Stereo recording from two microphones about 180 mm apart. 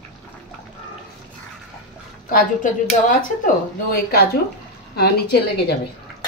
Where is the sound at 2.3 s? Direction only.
50° left (ahead or behind); by 5.7 s 65° left (ahead or behind).